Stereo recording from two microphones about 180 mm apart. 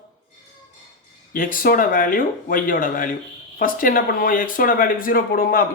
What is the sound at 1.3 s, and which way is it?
Speech, 50° left (ahead or behind).